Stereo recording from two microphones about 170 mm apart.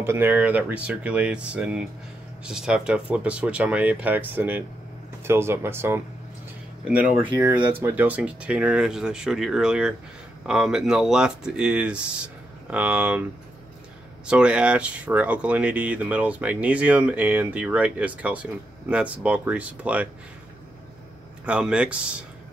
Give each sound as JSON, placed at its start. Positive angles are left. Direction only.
{"t": 0.0, "sound": "speech", "side_deg": -10}
{"t": 14.2, "sound": "speech", "side_deg": -5}
{"t": 21.5, "sound": "speech", "side_deg": -5}